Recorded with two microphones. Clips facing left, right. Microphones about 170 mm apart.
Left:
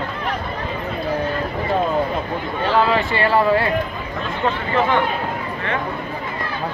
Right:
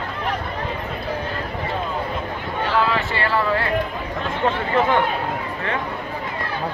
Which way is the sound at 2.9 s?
15° left (ahead or behind).